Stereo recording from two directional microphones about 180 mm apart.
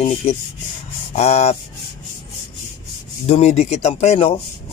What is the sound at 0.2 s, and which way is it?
Speech, 35° left (ahead or behind).